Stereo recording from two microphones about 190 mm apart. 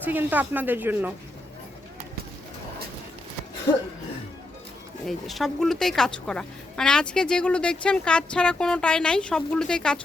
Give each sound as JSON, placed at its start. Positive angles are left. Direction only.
{"t": 0.0, "sound": "speech", "side_deg": -10}
{"t": 5.0, "sound": "speech", "side_deg": 0}